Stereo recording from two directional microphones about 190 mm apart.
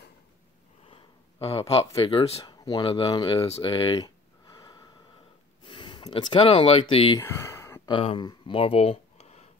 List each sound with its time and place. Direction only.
1.4 s a man's voice: 30° left (ahead or behind)
7.2 s a sound: 15° left (ahead or behind)
7.9 s speech: 30° left (ahead or behind)